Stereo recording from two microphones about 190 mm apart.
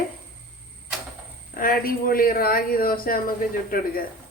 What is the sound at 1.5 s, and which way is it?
Speech, 50° left (ahead or behind).